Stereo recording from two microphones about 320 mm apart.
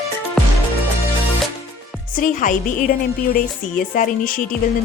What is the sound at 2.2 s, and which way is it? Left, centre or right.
Speech, left.